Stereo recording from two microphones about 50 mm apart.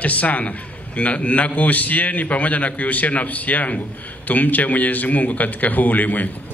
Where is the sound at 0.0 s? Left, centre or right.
Left.